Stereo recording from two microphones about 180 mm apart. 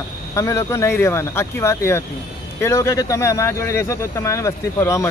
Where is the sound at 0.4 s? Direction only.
15° left (ahead or behind).